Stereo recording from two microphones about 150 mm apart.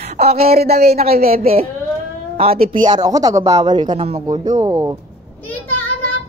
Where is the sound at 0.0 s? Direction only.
45° right (ahead or behind).